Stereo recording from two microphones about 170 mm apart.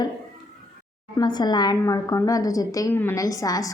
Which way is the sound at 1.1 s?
25° left (ahead or behind).